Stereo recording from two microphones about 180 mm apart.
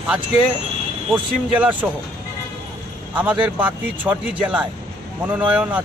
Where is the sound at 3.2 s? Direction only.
10° right (ahead or behind).